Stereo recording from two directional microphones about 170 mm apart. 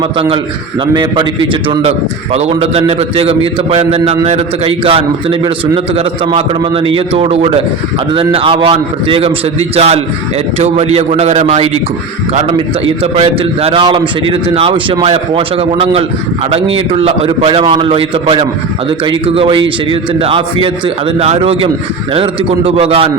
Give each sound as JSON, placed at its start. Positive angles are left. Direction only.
{"t": 0.9, "sound": "a man's voice", "side_deg": -25}